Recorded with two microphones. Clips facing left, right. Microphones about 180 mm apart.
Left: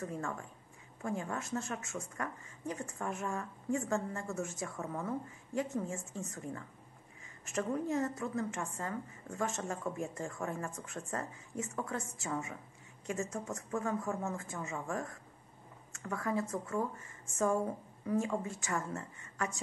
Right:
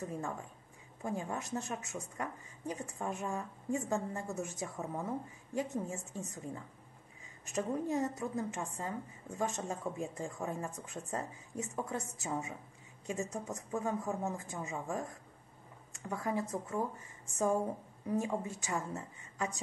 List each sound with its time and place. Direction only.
0.0 s speech: 15° right (ahead or behind)
18.0 s speech: 15° right (ahead or behind)